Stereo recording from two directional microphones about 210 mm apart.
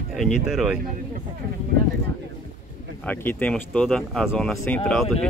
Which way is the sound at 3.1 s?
10° left (ahead or behind).